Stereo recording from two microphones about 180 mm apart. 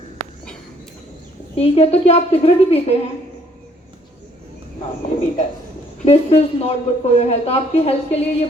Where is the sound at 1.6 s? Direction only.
35° left (ahead or behind).